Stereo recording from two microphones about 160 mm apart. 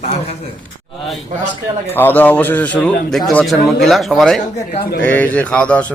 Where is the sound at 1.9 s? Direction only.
10° left (ahead or behind).